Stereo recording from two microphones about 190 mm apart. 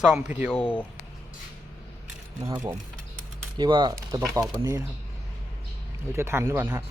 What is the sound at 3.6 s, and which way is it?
Speech, 25° right (ahead or behind).